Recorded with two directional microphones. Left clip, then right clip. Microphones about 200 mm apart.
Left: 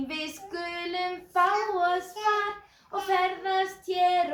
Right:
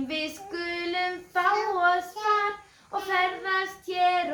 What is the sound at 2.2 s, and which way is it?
Child singing, 25° left (ahead or behind).